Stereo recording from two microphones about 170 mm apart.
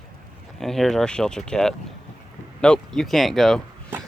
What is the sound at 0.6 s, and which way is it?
Speech, centre (ahead or behind).